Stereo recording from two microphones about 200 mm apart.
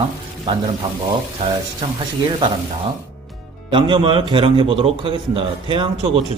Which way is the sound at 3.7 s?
25° right (ahead or behind).